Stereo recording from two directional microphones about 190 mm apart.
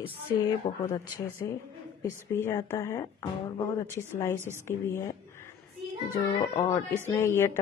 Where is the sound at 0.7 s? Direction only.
25° left (ahead or behind).